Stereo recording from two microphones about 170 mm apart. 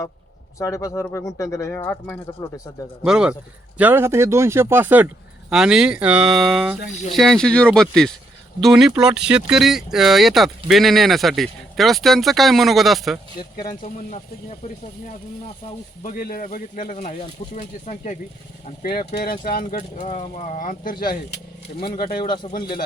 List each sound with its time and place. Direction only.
0.6 s speech: 20° left (ahead or behind)
3.0 s speech: 5° right (ahead or behind)
16.0 s speech: 55° left (ahead or behind)
18.8 s speech: 65° left (ahead or behind)
22.2 s speech: 25° left (ahead or behind)